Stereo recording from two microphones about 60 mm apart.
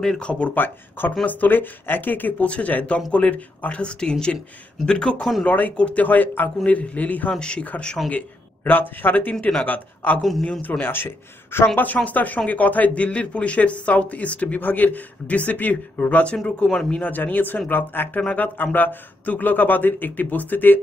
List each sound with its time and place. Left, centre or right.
0.2 s speech: centre
0.6 s speech: left
11.8 s speech: left
16.6 s speech: centre
17.0 s speech: left